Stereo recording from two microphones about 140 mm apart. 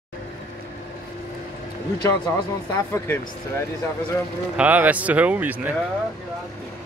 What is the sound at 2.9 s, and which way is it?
Speech, 20° left (ahead or behind).